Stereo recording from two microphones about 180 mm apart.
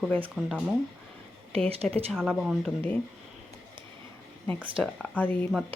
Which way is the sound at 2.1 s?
5° left (ahead or behind).